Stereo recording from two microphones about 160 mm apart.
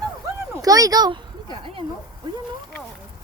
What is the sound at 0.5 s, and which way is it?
Speech, 20° right (ahead or behind).